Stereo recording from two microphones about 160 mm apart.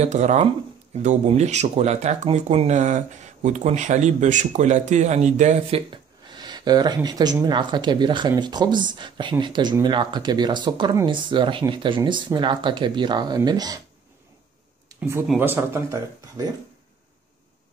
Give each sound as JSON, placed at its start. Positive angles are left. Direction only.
{"t": 0.0, "sound": "speech", "side_deg": -45}
{"t": 5.9, "sound": "a sound", "side_deg": -25}
{"t": 7.4, "sound": "speech", "side_deg": -30}
{"t": 15.0, "sound": "speech", "side_deg": -15}